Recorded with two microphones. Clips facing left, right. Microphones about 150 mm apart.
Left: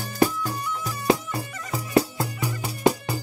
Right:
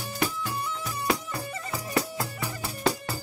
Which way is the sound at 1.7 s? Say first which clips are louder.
Left 7 dB; 25° left (ahead or behind).